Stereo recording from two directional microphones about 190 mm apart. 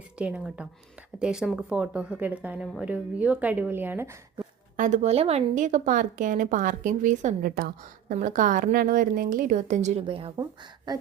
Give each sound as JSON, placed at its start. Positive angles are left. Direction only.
{"t": 0.2, "sound": "speech", "side_deg": -5}
{"t": 4.8, "sound": "a woman's voice", "side_deg": -40}